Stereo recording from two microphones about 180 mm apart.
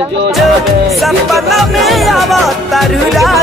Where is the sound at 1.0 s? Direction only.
Centre (ahead or behind).